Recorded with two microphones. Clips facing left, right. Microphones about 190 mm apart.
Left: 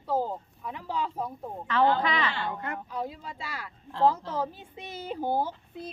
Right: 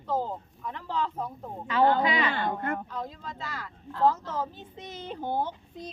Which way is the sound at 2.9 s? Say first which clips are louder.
Left 2 dB; 10° left (ahead or behind).